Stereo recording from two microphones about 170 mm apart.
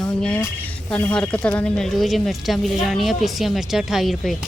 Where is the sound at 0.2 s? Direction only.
5° left (ahead or behind).